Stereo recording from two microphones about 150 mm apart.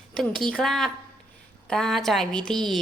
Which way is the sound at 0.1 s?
5° left (ahead or behind).